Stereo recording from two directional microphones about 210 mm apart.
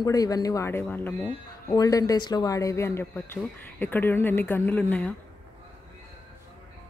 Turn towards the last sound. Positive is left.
turn(degrees=5)  # may be behind; listen again after turning